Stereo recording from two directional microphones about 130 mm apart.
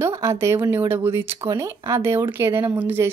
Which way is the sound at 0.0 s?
25° right (ahead or behind).